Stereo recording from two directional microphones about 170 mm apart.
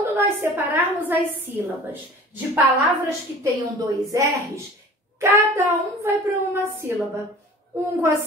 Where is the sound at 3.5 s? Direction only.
20° right (ahead or behind).